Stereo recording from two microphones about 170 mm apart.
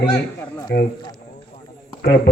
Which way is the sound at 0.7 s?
70° left (ahead or behind).